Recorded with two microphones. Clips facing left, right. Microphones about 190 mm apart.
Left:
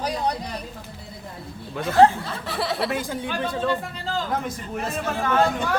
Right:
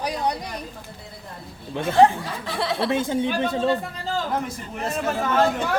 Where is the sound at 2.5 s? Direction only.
Centre (ahead or behind).